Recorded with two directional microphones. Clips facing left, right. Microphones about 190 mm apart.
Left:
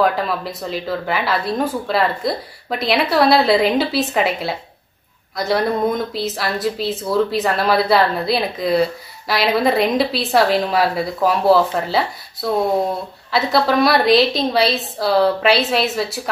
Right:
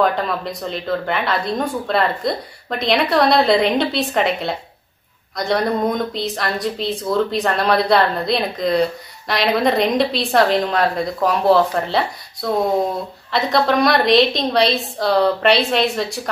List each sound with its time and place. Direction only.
0.0 s speech: 5° left (ahead or behind)